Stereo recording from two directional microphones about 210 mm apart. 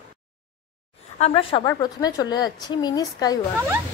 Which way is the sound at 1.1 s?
30° left (ahead or behind).